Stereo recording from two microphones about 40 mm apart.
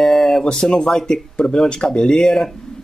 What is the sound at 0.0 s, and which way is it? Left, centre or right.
Speech, centre.